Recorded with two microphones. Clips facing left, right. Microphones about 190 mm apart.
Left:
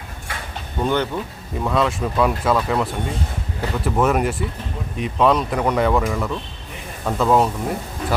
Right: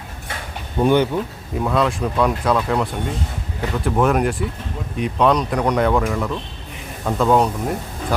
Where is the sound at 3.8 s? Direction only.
Centre (ahead or behind).